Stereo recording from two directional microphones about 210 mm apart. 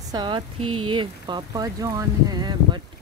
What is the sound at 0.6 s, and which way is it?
Speech, 90° right.